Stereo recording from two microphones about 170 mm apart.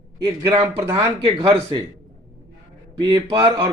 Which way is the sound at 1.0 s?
25° right (ahead or behind).